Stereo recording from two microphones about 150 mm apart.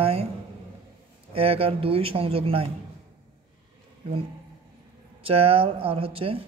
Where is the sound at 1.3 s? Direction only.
40° right (ahead or behind).